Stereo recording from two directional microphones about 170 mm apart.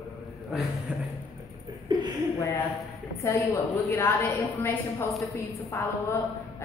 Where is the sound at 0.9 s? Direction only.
5° right (ahead or behind).